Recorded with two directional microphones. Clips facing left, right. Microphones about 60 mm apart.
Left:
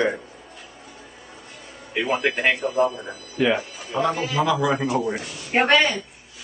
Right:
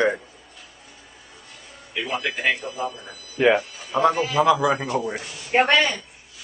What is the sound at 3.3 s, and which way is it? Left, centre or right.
Speech, right.